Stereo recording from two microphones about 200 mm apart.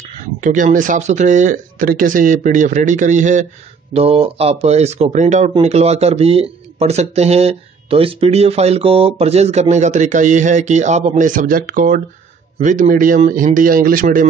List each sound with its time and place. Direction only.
0.0 s speech: 40° right (ahead or behind)